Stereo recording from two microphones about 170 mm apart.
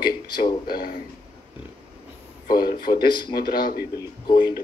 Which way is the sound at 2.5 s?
60° left (ahead or behind).